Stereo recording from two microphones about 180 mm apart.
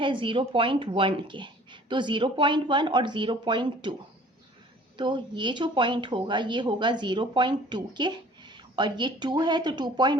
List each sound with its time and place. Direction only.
0.0 s speech: 25° right (ahead or behind)
4.9 s speech: 25° right (ahead or behind)